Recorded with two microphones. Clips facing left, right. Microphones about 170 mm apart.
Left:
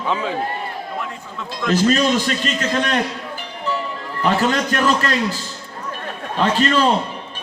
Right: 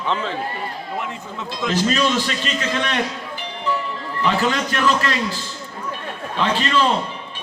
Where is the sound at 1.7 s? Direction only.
45° left (ahead or behind).